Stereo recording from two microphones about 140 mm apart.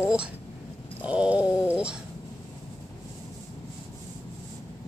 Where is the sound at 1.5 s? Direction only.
15° left (ahead or behind).